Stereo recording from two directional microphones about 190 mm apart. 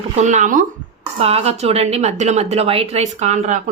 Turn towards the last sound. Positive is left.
turn(degrees=-40)  # may be behind; listen again after turning